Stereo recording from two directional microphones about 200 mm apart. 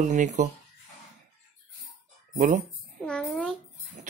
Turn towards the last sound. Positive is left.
turn(degrees=5)  # may be behind; listen again after turning